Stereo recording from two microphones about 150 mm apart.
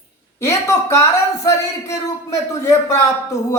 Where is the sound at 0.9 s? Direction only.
20° left (ahead or behind).